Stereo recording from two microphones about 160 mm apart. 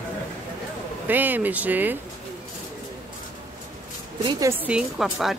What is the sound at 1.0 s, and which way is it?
Speech, 10° right (ahead or behind).